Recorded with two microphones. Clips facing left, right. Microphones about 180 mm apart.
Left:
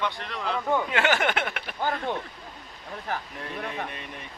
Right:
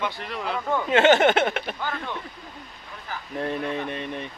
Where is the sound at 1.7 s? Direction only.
45° left (ahead or behind).